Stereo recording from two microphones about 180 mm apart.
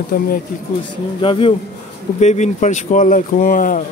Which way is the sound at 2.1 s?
40° left (ahead or behind).